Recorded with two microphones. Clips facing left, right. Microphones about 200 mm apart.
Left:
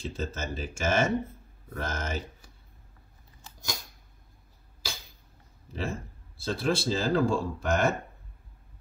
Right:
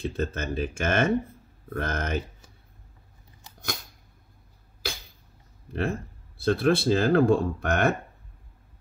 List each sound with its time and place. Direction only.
0.0 s speech: 60° right (ahead or behind)
5.7 s speech: 60° right (ahead or behind)